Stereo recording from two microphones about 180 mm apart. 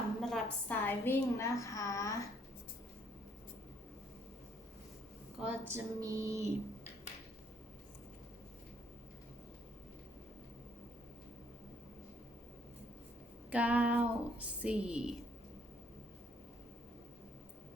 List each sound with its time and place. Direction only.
0.2 s a woman's voice: centre (ahead or behind); by 2.2 s 20° left (ahead or behind)
5.4 s speech: 10° right (ahead or behind)
13.5 s speech: 10° right (ahead or behind)